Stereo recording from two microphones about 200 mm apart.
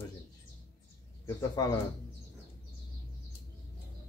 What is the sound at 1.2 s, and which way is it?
Speech, 15° left (ahead or behind).